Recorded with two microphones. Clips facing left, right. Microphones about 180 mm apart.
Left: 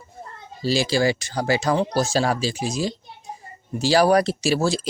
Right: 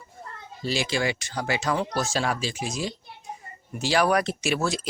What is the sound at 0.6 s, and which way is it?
Speech, 35° left (ahead or behind).